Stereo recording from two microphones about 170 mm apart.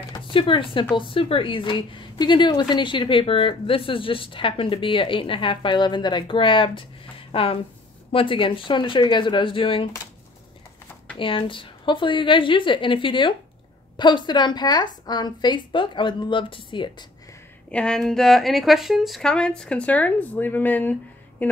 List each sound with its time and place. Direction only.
0.1 s a woman's voice: 30° left (ahead or behind)
11.1 s a woman's voice: 30° left (ahead or behind)
17.6 s a woman's voice: 5° left (ahead or behind)